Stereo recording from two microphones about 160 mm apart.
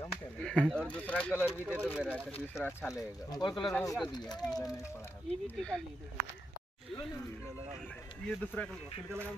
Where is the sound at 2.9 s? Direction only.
25° left (ahead or behind).